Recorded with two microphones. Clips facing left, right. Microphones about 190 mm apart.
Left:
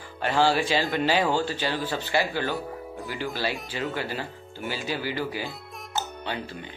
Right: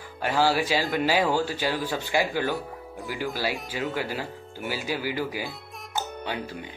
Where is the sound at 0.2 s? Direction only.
10° right (ahead or behind).